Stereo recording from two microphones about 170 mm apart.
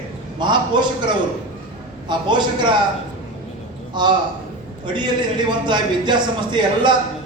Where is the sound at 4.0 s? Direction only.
25° right (ahead or behind).